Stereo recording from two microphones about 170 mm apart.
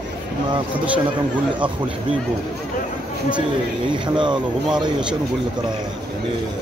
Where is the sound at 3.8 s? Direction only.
25° right (ahead or behind).